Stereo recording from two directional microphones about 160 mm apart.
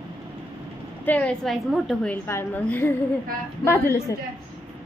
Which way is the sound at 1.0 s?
10° left (ahead or behind).